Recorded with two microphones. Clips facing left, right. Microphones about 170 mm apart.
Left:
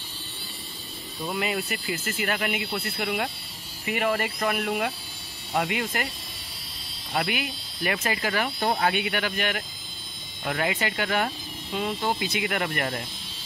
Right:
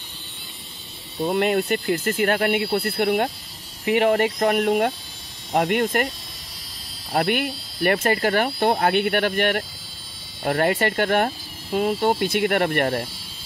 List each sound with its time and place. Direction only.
1.3 s speech: 55° right (ahead or behind)
4.4 s speech: 45° right (ahead or behind)
7.2 s speech: 55° right (ahead or behind); by 12.2 s 40° right (ahead or behind)
12.2 s speech: 55° right (ahead or behind)